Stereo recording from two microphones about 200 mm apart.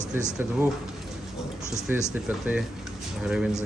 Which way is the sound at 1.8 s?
5° right (ahead or behind).